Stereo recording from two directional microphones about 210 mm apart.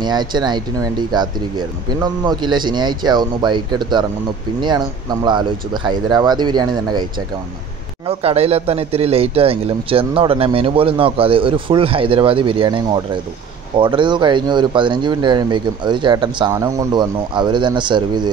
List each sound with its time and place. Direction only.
0.0 s speech: 20° right (ahead or behind)
8.1 s speech: 30° right (ahead or behind)